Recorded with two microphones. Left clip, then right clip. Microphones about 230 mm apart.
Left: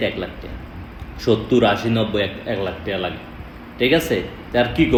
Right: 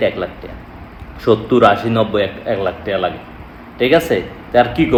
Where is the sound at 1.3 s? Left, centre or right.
Centre.